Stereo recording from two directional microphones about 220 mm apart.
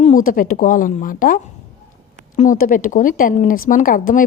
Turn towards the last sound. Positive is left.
turn(degrees=40)  # may be behind; listen again after turning